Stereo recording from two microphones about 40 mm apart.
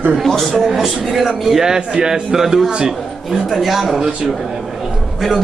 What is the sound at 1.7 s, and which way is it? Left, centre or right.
Speech, centre.